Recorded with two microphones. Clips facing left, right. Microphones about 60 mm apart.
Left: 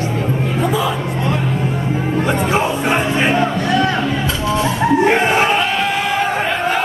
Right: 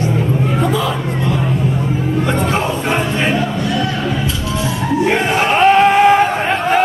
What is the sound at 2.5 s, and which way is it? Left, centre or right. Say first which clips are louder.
Music: left 1 dB; centre.